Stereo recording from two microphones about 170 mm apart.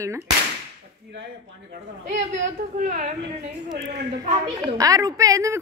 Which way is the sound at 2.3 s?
50° right (ahead or behind).